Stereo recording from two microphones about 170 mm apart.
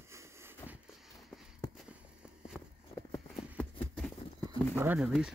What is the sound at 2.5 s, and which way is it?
Clip-clop, centre (ahead or behind).